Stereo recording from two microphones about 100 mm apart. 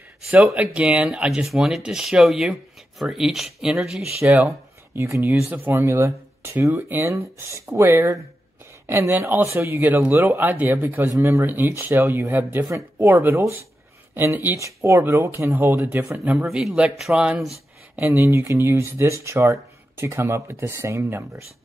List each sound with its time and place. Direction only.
0.6 s speech: 10° right (ahead or behind)
4.2 s speech: 15° right (ahead or behind)
16.0 s speech: 10° right (ahead or behind)
17.9 s speech: 25° right (ahead or behind)